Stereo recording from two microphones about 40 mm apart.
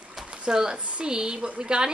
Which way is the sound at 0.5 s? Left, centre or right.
Centre.